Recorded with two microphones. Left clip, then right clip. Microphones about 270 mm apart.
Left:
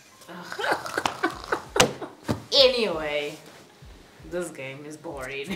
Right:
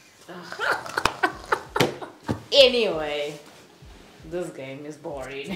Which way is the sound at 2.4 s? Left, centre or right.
Centre.